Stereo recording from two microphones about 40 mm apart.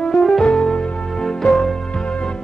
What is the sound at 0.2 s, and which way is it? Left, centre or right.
Music, centre.